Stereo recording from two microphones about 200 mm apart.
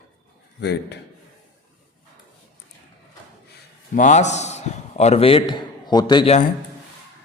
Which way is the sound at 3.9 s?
40° left (ahead or behind).